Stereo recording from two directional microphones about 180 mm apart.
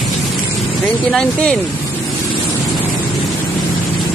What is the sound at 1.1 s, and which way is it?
Speech, 5° left (ahead or behind).